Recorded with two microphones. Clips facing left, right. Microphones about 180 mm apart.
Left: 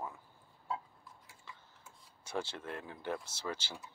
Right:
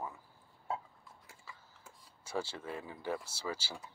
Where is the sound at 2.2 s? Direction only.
5° right (ahead or behind).